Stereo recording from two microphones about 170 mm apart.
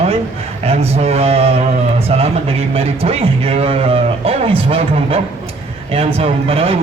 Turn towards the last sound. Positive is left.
turn(degrees=-35)  # may be behind; listen again after turning